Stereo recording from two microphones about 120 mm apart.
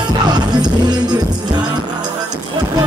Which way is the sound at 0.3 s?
35° right (ahead or behind).